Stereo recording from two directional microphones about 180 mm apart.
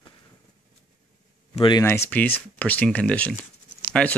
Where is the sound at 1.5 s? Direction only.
25° left (ahead or behind).